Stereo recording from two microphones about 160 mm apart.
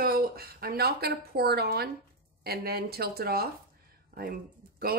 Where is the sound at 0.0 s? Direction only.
70° right (ahead or behind).